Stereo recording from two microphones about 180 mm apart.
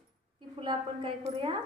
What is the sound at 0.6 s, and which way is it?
Speech, 30° right (ahead or behind).